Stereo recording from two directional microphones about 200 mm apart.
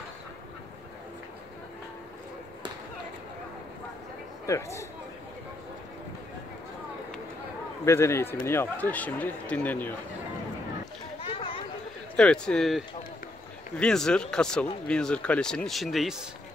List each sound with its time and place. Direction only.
4.5 s speech: 15° left (ahead or behind)
7.8 s speech: 15° left (ahead or behind)
11.2 s a sound: 30° left (ahead or behind)
12.2 s speech: 5° left (ahead or behind)